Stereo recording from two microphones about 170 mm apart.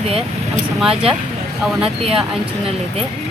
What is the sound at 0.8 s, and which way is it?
Speech, 5° right (ahead or behind).